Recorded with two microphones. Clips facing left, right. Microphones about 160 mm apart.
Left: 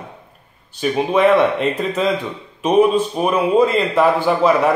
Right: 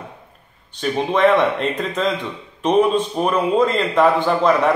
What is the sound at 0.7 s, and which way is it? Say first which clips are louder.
A man's voice: left 2 dB; 5° left (ahead or behind).